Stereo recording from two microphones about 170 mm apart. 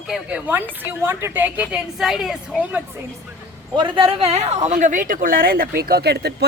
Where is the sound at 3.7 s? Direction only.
25° right (ahead or behind); by 6.4 s 75° right (ahead or behind).